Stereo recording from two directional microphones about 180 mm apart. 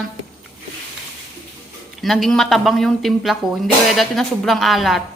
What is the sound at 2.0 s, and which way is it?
A woman's voice, centre (ahead or behind).